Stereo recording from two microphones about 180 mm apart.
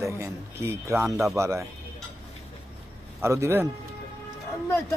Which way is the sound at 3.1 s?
15° right (ahead or behind).